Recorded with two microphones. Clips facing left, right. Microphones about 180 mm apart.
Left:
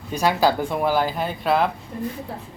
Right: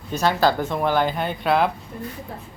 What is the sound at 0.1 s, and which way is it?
Speech, 10° left (ahead or behind).